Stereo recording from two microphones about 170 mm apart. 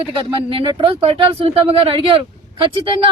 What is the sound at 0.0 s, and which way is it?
Speech, 30° right (ahead or behind).